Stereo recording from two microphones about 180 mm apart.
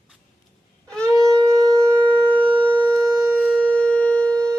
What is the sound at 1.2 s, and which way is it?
Shofar, 15° right (ahead or behind).